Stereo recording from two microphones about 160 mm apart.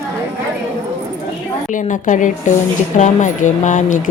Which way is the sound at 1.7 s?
55° left (ahead or behind).